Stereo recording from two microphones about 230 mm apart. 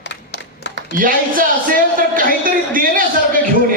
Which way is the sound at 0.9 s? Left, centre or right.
Right.